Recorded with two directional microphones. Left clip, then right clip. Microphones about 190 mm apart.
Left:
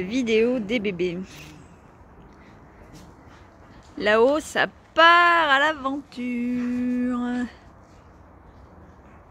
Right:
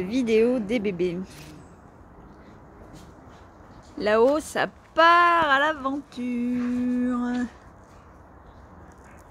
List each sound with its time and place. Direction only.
0.0 s speech: 5° right (ahead or behind)
4.0 s speech: centre (ahead or behind)